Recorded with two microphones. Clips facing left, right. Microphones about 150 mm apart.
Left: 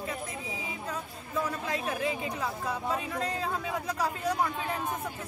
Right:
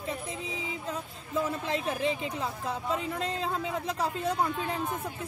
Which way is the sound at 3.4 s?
25° right (ahead or behind).